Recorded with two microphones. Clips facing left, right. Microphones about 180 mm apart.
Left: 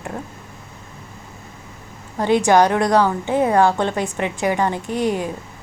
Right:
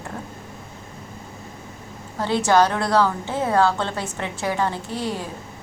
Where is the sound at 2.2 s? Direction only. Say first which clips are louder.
Left 4 dB; 15° left (ahead or behind).